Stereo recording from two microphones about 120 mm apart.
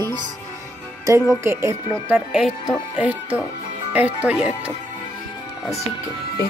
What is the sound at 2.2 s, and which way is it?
Speech, 5° right (ahead or behind).